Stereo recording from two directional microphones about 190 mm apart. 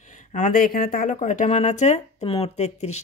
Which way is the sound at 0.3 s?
45° left (ahead or behind).